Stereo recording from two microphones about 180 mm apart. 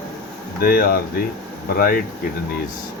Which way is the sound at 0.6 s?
55° left (ahead or behind).